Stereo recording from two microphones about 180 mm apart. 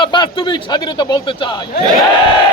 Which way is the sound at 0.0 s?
25° left (ahead or behind).